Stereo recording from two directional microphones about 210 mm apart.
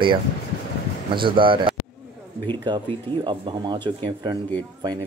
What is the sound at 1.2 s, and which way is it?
Speech, 25° right (ahead or behind).